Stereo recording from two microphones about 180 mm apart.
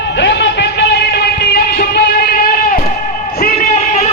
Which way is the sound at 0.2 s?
75° left (ahead or behind).